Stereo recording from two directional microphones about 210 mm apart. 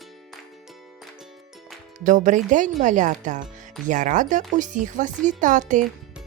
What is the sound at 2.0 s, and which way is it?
Speech, 35° right (ahead or behind).